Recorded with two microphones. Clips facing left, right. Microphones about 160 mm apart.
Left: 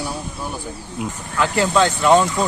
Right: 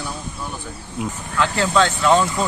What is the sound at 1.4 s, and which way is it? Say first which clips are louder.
Speech: left 1 dB; 15° left (ahead or behind).